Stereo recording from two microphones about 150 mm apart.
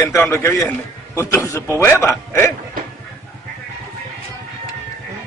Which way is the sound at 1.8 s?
15° left (ahead or behind).